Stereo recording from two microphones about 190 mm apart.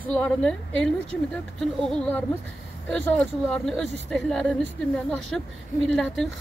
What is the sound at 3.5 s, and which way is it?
Speech, centre (ahead or behind).